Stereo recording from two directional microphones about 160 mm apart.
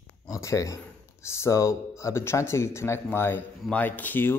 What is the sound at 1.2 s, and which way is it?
Speech, 15° left (ahead or behind).